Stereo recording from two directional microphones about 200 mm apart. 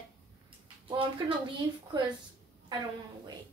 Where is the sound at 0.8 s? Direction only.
25° right (ahead or behind).